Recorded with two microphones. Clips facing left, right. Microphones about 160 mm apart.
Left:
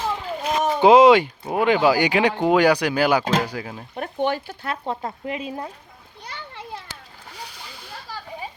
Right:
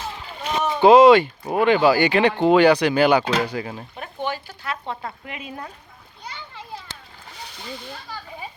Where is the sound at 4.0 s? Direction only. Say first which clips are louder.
Left 6 dB; 60° left (ahead or behind).